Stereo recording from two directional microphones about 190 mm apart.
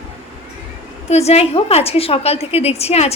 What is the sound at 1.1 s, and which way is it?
A woman's voice, 35° left (ahead or behind).